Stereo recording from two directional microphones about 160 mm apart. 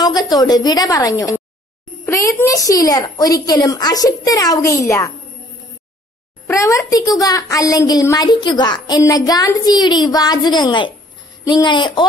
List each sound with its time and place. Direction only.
0.0 s a child's voice: 25° left (ahead or behind)
6.4 s a child's voice: 20° left (ahead or behind)